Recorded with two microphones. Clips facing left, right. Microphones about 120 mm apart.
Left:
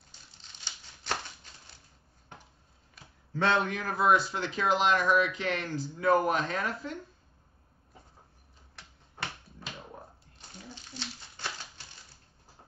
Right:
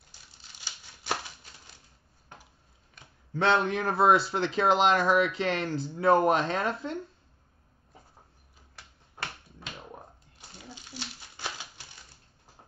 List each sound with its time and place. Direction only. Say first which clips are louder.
0.4 s crumpling: right 1 dB; 10° right (ahead or behind)
3.4 s speech: right 3 dB; 30° right (ahead or behind)
8.7 s typewriter: right 1 dB; centre (ahead or behind)
10.7 s a sound: right 1 dB; 10° right (ahead or behind)